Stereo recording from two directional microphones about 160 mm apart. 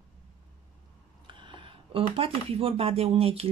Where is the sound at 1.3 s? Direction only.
30° right (ahead or behind).